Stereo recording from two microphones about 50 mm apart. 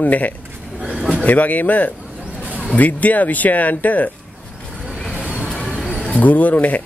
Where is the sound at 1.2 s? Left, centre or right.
Left.